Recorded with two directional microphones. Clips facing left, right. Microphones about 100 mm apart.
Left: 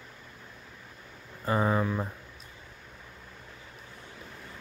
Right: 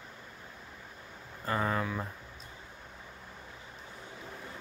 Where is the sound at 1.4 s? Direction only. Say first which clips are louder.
Left 5 dB; 15° left (ahead or behind).